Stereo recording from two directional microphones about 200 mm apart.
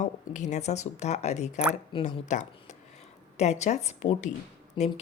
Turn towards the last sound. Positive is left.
turn(degrees=25)  # may be behind; listen again after turning